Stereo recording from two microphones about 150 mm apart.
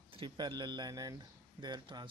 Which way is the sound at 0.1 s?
35° right (ahead or behind).